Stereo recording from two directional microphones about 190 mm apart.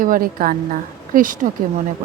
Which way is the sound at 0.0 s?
45° right (ahead or behind).